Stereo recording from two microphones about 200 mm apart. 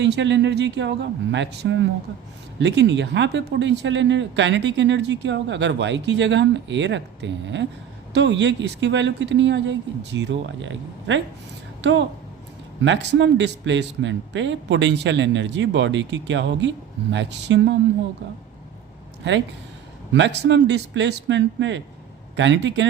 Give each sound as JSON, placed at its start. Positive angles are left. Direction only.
{"t": 0.0, "sound": "a woman's voice", "side_deg": -60}
{"t": 20.1, "sound": "speech", "side_deg": -60}